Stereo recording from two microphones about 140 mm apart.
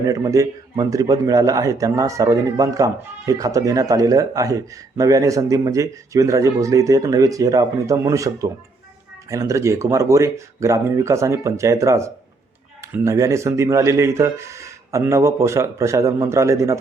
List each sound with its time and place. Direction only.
0.0 s speech: 25° right (ahead or behind)